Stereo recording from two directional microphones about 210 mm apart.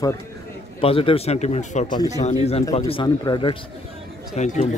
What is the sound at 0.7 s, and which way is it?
Speech, 25° left (ahead or behind).